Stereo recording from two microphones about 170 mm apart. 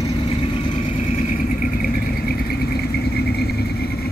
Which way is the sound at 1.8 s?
65° left (ahead or behind).